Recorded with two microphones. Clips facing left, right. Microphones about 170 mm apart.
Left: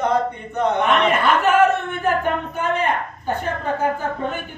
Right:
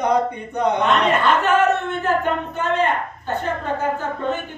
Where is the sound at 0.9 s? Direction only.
10° left (ahead or behind).